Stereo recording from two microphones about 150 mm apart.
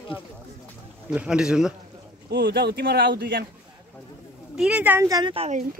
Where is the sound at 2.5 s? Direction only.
90° right.